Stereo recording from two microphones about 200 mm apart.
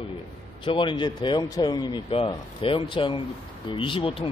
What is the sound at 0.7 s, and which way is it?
A man's voice, 25° left (ahead or behind).